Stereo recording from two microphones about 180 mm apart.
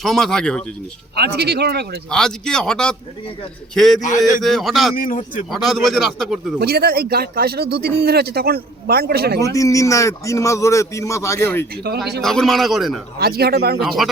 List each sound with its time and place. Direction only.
0.0 s a man's voice: centre (ahead or behind)
1.1 s speech: 60° right (ahead or behind)
2.0 s a man's voice: 5° left (ahead or behind)
4.9 s speech: 50° left (ahead or behind)
5.5 s a man's voice: centre (ahead or behind)
6.6 s speech: 60° right (ahead or behind)
9.4 s a man's voice: 20° left (ahead or behind)
12.2 s a man's voice: centre (ahead or behind)
13.1 s speech: 60° right (ahead or behind)
13.8 s a man's voice: centre (ahead or behind)